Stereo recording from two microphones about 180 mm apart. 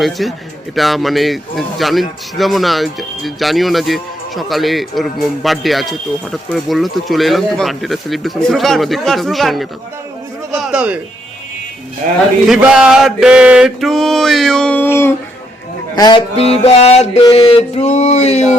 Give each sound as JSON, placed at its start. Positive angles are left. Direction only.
{"t": 0.0, "sound": "speech", "side_deg": 0}
{"t": 12.5, "sound": "speech", "side_deg": -5}
{"t": 16.0, "sound": "a man's voice", "side_deg": 25}
{"t": 16.3, "sound": "a sound", "side_deg": 35}